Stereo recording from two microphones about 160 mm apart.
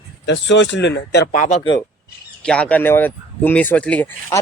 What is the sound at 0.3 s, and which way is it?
Speech, 90° left.